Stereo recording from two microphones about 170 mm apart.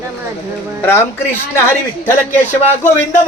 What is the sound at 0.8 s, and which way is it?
A man's voice, 15° left (ahead or behind).